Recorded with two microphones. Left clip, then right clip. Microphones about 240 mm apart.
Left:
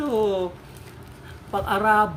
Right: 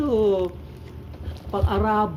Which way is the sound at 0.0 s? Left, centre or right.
Left.